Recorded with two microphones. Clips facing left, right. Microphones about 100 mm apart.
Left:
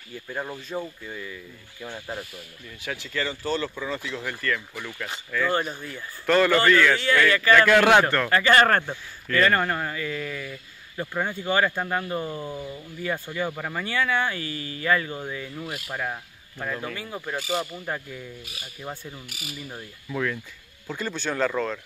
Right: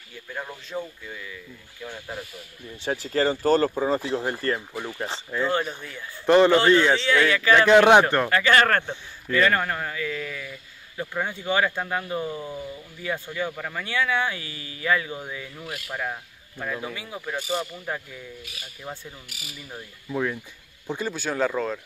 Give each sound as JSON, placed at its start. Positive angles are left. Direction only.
{"t": 0.3, "sound": "speech", "side_deg": 10}
{"t": 2.8, "sound": "speech", "side_deg": -35}
{"t": 5.5, "sound": "speech", "side_deg": 5}
{"t": 6.2, "sound": "speech", "side_deg": -20}
{"t": 7.2, "sound": "speech", "side_deg": -5}
{"t": 7.5, "sound": "speech", "side_deg": -20}
{"t": 8.3, "sound": "speech", "side_deg": 5}
{"t": 9.3, "sound": "speech", "side_deg": -5}
{"t": 20.1, "sound": "speech", "side_deg": -15}
{"t": 21.1, "sound": "speech", "side_deg": -5}